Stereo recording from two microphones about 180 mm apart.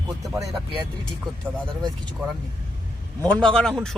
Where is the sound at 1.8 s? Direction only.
25° right (ahead or behind).